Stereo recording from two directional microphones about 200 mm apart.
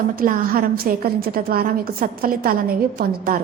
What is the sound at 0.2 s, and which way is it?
A woman's voice, 45° right (ahead or behind).